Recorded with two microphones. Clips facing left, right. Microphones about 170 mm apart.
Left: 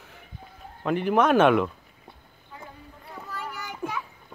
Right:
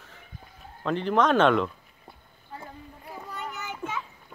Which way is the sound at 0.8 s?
10° left (ahead or behind).